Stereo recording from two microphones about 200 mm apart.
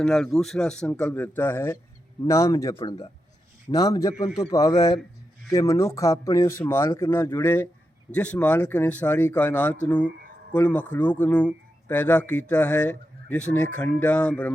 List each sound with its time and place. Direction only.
0.0 s a man's voice: centre (ahead or behind)